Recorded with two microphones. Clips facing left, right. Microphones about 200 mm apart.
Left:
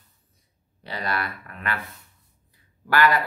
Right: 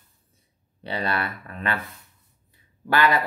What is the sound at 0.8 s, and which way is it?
Speech, 25° right (ahead or behind).